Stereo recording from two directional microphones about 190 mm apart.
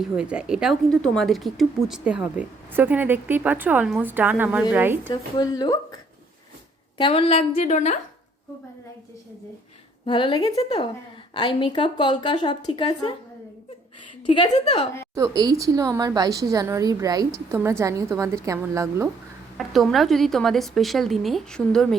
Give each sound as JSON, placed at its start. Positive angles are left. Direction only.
{"t": 0.0, "sound": "a woman's voice", "side_deg": -5}
{"t": 5.0, "sound": "a woman's voice", "side_deg": 20}
{"t": 7.0, "sound": "a woman's voice", "side_deg": 30}
{"t": 10.1, "sound": "a woman's voice", "side_deg": 25}
{"t": 14.3, "sound": "a woman's voice", "side_deg": 30}
{"t": 15.1, "sound": "a woman's voice", "side_deg": -20}
{"t": 19.5, "sound": "speech", "side_deg": 0}